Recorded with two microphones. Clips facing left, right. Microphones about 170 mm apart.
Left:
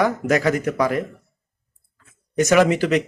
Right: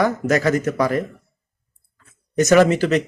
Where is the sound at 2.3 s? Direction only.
15° left (ahead or behind).